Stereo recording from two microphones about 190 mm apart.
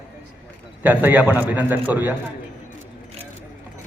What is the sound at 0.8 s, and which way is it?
A man's voice, 10° right (ahead or behind).